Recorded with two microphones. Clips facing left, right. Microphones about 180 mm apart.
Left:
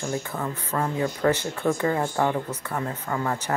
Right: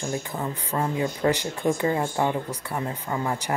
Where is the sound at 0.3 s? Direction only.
15° right (ahead or behind).